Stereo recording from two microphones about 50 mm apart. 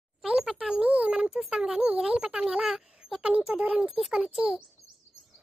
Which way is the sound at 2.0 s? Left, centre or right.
Centre.